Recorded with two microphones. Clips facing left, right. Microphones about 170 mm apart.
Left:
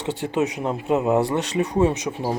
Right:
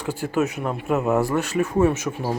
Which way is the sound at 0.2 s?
20° left (ahead or behind).